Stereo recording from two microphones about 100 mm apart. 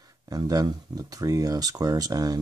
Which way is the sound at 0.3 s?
40° right (ahead or behind).